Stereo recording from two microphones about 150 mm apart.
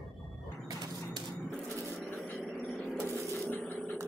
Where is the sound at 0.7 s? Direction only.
30° right (ahead or behind).